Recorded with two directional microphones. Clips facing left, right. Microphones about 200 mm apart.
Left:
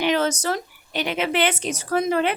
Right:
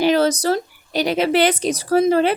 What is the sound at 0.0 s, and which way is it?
A woman's voice, 35° right (ahead or behind).